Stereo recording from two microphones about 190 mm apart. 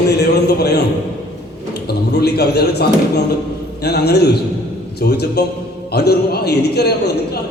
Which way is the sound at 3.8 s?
60° left (ahead or behind).